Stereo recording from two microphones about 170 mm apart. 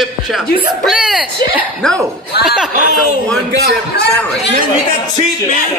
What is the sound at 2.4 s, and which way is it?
Speech, 5° right (ahead or behind).